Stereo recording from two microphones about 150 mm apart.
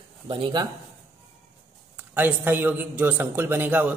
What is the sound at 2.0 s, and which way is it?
A man's voice, 15° right (ahead or behind).